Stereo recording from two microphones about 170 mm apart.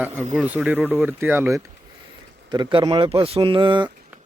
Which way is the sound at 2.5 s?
30° right (ahead or behind).